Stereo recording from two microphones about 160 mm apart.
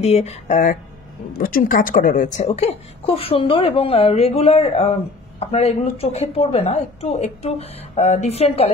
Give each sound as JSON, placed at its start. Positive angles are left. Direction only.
{"t": 0.0, "sound": "speech", "side_deg": 40}
{"t": 1.4, "sound": "a woman's voice", "side_deg": 65}